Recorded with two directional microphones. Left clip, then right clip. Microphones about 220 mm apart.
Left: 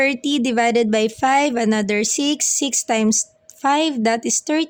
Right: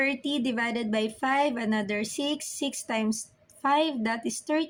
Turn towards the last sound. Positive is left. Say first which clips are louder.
# left 9 dB
turn(degrees=45)  # may be behind; listen again after turning